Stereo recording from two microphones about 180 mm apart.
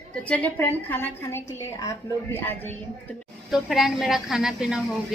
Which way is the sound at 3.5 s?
Centre (ahead or behind).